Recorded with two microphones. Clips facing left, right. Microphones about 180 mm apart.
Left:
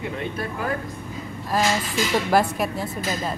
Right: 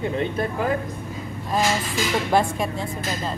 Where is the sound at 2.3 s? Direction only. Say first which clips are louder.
Even; 5° left (ahead or behind).